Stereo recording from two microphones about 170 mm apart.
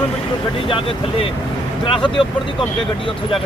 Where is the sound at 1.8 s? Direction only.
30° left (ahead or behind).